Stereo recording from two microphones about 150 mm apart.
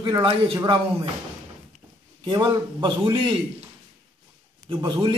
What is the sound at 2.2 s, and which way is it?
A man's voice, 30° right (ahead or behind).